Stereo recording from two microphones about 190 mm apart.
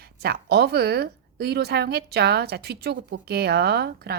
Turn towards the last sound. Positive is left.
turn(degrees=-60)  # may be behind; listen again after turning